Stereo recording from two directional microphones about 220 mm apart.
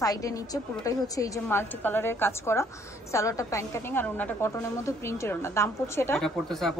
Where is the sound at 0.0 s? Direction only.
15° left (ahead or behind).